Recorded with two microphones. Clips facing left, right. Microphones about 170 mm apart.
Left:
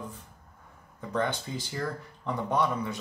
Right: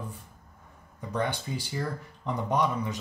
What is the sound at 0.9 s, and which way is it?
Speech, 15° right (ahead or behind).